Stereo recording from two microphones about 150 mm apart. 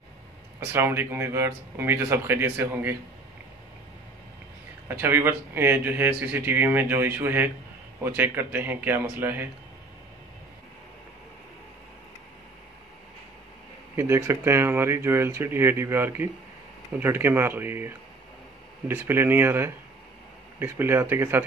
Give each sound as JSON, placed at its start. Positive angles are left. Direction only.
{"t": 0.7, "sound": "a man's voice", "side_deg": -15}
{"t": 4.8, "sound": "a man's voice", "side_deg": -15}
{"t": 13.9, "sound": "a man's voice", "side_deg": -15}